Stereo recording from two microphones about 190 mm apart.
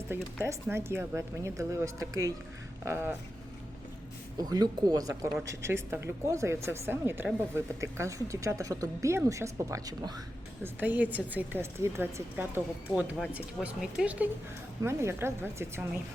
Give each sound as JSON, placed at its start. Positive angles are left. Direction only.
{"t": 0.1, "sound": "speech", "side_deg": -10}
{"t": 4.4, "sound": "speech", "side_deg": -20}